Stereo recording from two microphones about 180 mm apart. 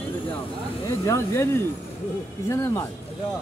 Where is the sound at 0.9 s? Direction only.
15° left (ahead or behind).